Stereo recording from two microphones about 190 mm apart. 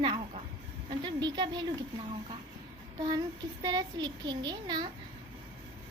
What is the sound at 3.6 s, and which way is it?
A woman's voice, 20° right (ahead or behind).